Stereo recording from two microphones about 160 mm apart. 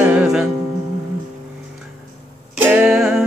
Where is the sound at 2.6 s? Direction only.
5° right (ahead or behind).